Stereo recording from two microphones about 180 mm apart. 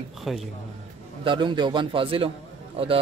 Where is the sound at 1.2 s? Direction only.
25° right (ahead or behind).